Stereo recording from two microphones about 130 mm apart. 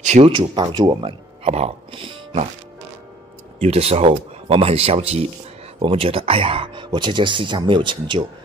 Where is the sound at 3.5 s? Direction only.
50° right (ahead or behind); by 8.3 s 35° right (ahead or behind).